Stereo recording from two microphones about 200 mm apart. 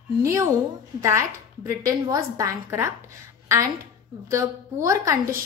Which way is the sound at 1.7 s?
15° right (ahead or behind).